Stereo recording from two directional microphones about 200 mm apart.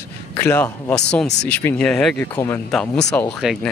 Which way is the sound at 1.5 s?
5° left (ahead or behind).